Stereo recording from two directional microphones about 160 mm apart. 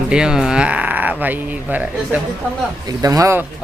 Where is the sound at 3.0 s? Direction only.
20° right (ahead or behind).